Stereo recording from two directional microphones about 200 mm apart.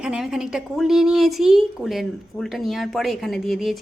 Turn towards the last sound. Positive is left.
turn(degrees=0)  # may be behind; listen again after turning